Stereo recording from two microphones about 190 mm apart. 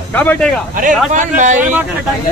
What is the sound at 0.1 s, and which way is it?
Speech, 10° left (ahead or behind).